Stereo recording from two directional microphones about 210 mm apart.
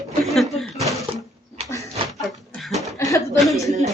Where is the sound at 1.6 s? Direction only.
15° left (ahead or behind).